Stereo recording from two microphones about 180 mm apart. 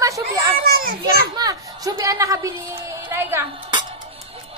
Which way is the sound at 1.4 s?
20° right (ahead or behind).